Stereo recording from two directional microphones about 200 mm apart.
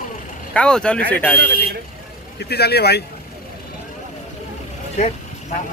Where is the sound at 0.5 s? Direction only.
5° left (ahead or behind).